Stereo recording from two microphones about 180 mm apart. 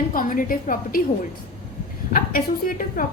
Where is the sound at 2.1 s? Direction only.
50° left (ahead or behind).